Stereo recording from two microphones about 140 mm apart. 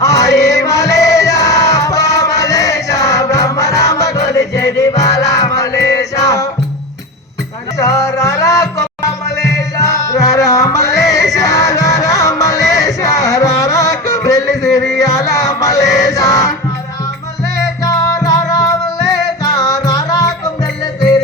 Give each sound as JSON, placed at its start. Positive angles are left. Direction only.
{"t": 0.0, "sound": "music", "side_deg": 20}
{"t": 7.8, "sound": "music", "side_deg": 25}
{"t": 14.5, "sound": "music", "side_deg": 0}
{"t": 14.9, "sound": "chant", "side_deg": 25}
{"t": 17.8, "sound": "music", "side_deg": 25}